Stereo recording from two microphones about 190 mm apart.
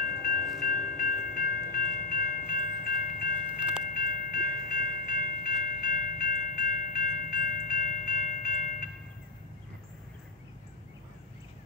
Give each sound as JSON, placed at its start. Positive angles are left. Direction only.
{"t": 0.6, "sound": "train", "side_deg": 45}
{"t": 3.5, "sound": "train", "side_deg": -5}
{"t": 3.9, "sound": "train", "side_deg": 45}